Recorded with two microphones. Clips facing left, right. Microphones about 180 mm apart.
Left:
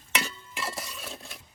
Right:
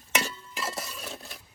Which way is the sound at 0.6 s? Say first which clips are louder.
Right 1 dB; centre (ahead or behind).